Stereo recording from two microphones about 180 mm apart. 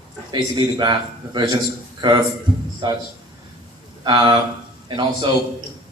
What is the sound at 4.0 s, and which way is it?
A man's voice, 25° right (ahead or behind).